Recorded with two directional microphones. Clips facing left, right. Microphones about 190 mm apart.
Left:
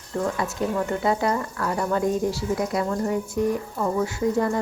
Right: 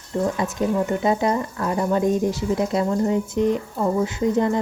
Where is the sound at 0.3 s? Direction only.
20° right (ahead or behind).